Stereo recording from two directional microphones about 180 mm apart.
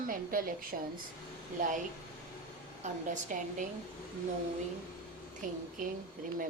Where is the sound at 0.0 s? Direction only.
50° right (ahead or behind).